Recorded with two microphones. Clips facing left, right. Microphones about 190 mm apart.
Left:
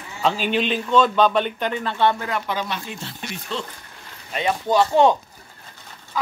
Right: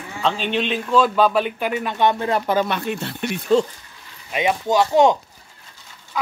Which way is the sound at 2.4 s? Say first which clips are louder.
Right 7 dB; 45° right (ahead or behind).